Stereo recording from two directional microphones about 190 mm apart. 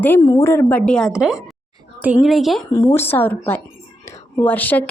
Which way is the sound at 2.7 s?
15° left (ahead or behind).